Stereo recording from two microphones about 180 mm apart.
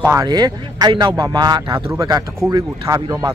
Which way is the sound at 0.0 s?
20° right (ahead or behind).